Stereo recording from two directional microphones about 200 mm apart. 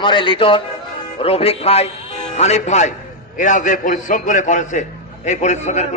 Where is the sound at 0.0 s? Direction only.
25° left (ahead or behind).